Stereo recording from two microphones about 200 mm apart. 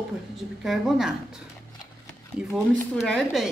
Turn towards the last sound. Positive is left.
turn(degrees=0)  # may be behind; listen again after turning